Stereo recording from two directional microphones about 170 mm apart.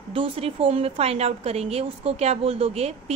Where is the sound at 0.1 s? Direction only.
30° right (ahead or behind).